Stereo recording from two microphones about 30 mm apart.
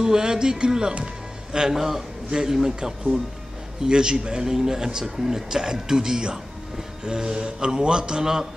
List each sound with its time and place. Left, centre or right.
0.0 s speech: right
1.7 s a man's voice: centre
3.8 s speech: right
4.4 s speech: centre